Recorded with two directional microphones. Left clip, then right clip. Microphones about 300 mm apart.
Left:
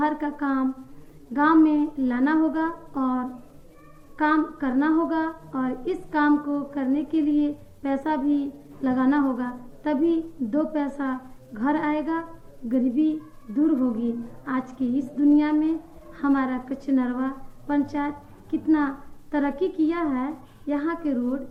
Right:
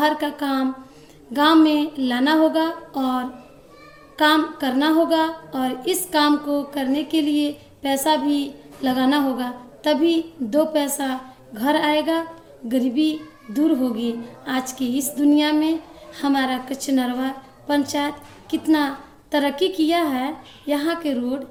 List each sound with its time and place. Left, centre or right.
0.0 s a woman's voice: right